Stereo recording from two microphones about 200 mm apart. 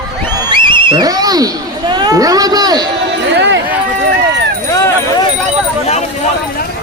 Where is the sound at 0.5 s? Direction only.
25° right (ahead or behind).